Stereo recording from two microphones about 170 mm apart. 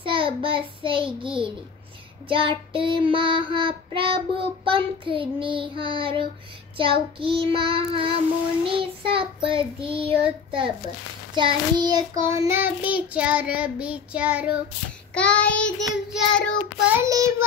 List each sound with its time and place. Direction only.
0.0 s child singing: 30° right (ahead or behind); by 14.6 s 5° right (ahead or behind)
15.1 s child singing: 5° left (ahead or behind)
17.0 s child singing: 15° right (ahead or behind)